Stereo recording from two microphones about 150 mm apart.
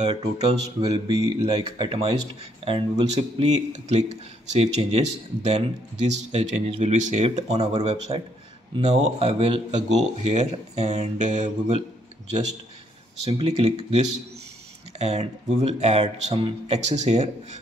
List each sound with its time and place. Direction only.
0.0 s speech: 45° right (ahead or behind)
0.9 s speech: 25° right (ahead or behind)
2.6 s speech: 40° right (ahead or behind)
13.2 s speech: 40° right (ahead or behind)
15.0 s speech: 45° right (ahead or behind)